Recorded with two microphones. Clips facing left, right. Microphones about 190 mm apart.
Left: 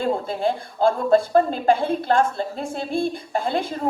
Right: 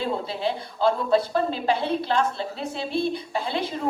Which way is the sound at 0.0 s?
50° left (ahead or behind).